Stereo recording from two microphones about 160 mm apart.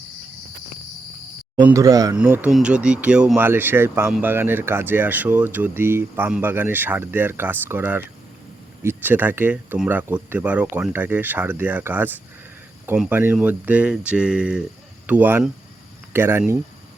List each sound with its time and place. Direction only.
1.6 s speech: 20° right (ahead or behind)
2.1 s speech: 10° right (ahead or behind)